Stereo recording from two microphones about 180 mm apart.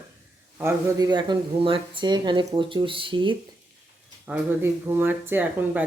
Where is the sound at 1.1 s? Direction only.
25° right (ahead or behind).